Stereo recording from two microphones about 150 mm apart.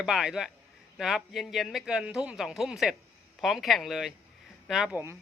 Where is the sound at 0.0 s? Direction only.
5° right (ahead or behind).